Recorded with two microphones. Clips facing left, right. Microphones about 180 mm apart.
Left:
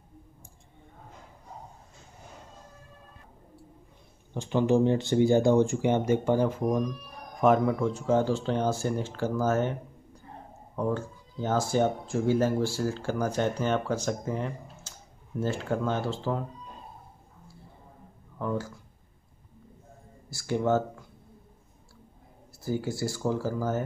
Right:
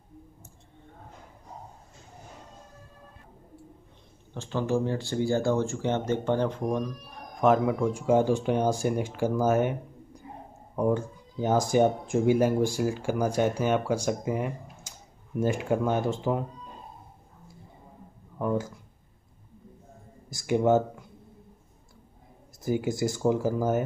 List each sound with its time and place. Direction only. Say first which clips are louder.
4.3 s speech: left 4 dB; 15° left (ahead or behind); by 16.4 s 15° right (ahead or behind)
18.4 s speech: right 3 dB; 15° right (ahead or behind)
20.2 s speech: right 3 dB; 15° right (ahead or behind)
22.6 s speech: right 3 dB; 20° right (ahead or behind)